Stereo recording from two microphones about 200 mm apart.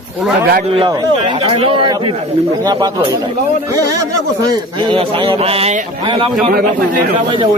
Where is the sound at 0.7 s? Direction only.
25° right (ahead or behind).